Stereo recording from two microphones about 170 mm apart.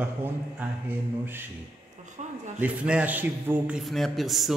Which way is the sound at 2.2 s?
45° right (ahead or behind).